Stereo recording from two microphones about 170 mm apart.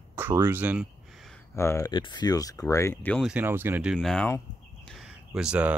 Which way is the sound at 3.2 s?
5° right (ahead or behind).